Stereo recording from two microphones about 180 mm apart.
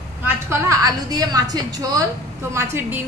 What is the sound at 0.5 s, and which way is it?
A woman's voice, 20° right (ahead or behind).